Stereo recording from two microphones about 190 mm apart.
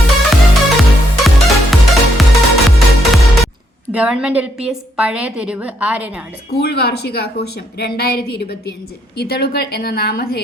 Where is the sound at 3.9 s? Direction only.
5° right (ahead or behind).